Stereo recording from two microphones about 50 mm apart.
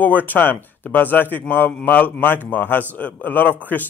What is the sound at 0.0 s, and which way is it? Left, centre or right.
Speech, left.